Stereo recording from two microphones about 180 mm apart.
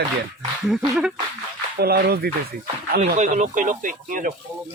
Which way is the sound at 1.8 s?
60° right (ahead or behind).